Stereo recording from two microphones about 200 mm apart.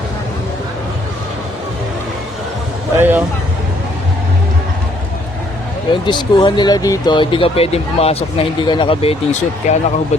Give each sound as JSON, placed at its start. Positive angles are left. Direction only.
{"t": 3.0, "sound": "speech", "side_deg": -10}
{"t": 5.9, "sound": "speech", "side_deg": 25}